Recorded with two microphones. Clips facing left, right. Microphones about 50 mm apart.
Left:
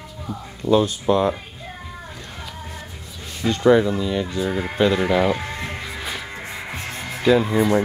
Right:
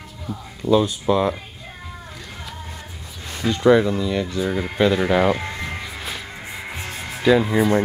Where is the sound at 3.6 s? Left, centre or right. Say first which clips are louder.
Even; centre.